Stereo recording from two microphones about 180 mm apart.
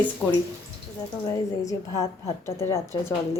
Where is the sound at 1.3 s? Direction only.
20° left (ahead or behind).